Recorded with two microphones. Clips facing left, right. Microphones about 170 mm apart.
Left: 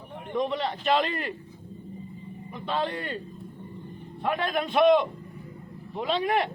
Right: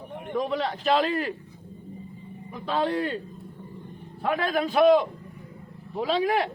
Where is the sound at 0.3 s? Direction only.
Centre (ahead or behind).